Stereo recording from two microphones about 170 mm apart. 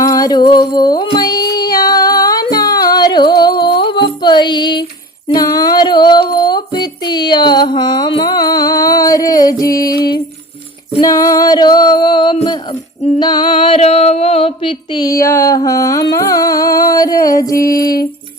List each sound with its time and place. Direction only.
0.0 s music: 20° left (ahead or behind)
5.3 s a sound: 20° left (ahead or behind)
11.0 s music: 20° left (ahead or behind)
13.1 s a sound: 25° left (ahead or behind)
16.1 s music: 20° left (ahead or behind)
17.6 s music: 60° left (ahead or behind)